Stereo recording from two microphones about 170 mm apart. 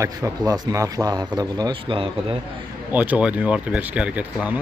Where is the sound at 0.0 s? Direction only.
20° right (ahead or behind).